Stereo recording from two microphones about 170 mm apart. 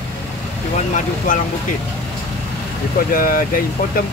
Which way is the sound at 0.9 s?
50° left (ahead or behind).